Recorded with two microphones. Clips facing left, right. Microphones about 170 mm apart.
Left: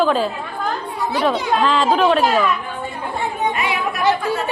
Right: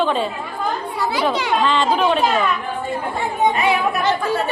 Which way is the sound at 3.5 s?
30° right (ahead or behind).